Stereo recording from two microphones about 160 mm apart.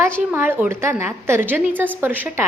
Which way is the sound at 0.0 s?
15° right (ahead or behind).